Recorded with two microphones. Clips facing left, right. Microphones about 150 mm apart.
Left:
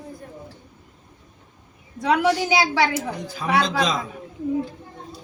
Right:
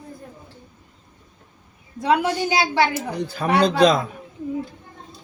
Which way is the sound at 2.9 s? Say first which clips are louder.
Right 1 dB; 60° right (ahead or behind).